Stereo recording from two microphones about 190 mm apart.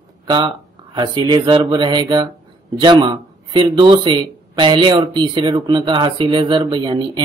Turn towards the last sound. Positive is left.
turn(degrees=-25)  # may be behind; listen again after turning